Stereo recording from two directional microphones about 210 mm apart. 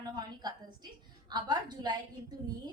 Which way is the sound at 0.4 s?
20° right (ahead or behind).